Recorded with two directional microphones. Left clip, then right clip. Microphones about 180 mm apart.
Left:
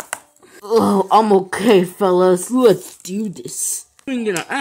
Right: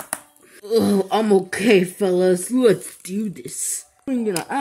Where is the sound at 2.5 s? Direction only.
10° left (ahead or behind).